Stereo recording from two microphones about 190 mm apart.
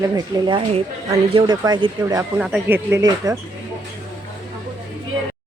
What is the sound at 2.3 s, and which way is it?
Speech, 10° right (ahead or behind).